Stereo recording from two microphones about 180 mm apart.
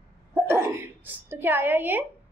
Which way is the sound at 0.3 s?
10° right (ahead or behind).